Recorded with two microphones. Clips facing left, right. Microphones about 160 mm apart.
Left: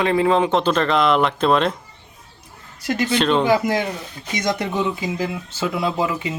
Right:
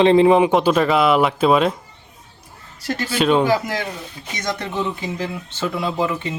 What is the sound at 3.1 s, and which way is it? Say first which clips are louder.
Speech: right 3 dB; 10° right (ahead or behind).